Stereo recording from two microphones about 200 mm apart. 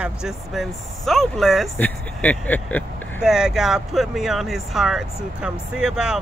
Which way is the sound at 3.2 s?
5° right (ahead or behind).